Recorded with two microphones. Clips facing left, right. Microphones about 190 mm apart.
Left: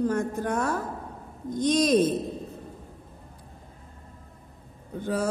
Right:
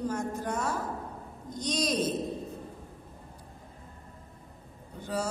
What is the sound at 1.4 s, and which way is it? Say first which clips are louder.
Speech: left 8 dB; 55° left (ahead or behind).